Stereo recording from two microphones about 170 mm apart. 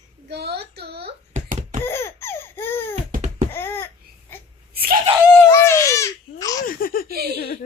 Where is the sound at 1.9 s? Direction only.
15° left (ahead or behind).